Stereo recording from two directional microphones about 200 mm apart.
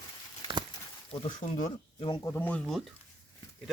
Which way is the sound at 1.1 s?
25° left (ahead or behind).